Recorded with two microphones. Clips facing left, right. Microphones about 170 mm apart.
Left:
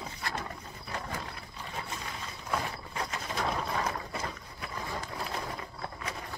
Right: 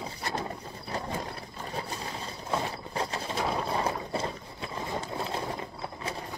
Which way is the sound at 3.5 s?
30° right (ahead or behind).